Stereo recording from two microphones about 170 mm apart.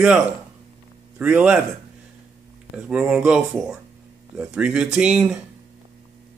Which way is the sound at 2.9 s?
5° right (ahead or behind).